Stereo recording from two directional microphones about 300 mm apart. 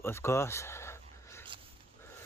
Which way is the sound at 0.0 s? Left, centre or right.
Centre.